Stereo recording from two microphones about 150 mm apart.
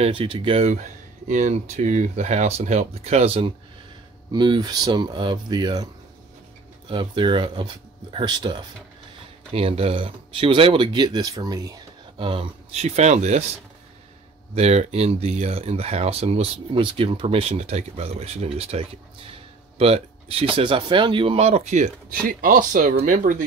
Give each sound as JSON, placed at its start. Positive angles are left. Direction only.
{"t": 0.0, "sound": "speech", "side_deg": -35}
{"t": 0.7, "sound": "speech", "side_deg": -55}
{"t": 6.9, "sound": "speech", "side_deg": -35}
{"t": 9.5, "sound": "speech", "side_deg": -40}
{"t": 14.5, "sound": "speech", "side_deg": -45}